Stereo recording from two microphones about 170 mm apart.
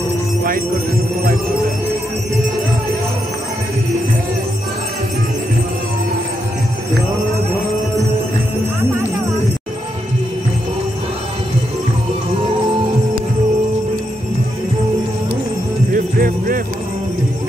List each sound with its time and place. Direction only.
15.9 s jingle bell: 55° right (ahead or behind)